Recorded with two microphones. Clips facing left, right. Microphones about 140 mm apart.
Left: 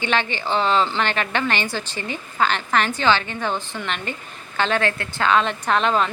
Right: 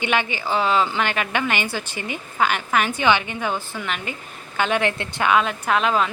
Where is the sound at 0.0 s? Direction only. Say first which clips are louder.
Even; 10° right (ahead or behind).